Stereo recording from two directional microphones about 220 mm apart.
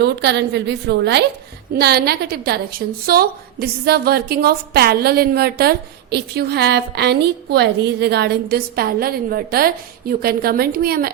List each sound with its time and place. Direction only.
0.0 s a woman's voice: 50° right (ahead or behind)